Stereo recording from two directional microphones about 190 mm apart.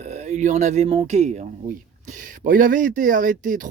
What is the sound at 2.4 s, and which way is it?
Speech, 45° right (ahead or behind).